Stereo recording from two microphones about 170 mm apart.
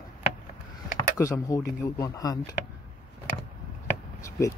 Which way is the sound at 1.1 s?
15° left (ahead or behind).